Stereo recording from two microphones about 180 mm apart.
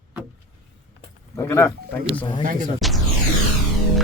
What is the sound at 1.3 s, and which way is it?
Speech, 15° left (ahead or behind).